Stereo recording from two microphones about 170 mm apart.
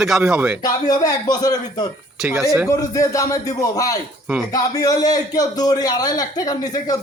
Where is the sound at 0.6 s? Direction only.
20° left (ahead or behind).